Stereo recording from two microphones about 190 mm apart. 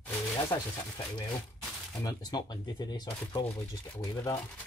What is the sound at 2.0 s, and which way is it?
Speech, 20° left (ahead or behind).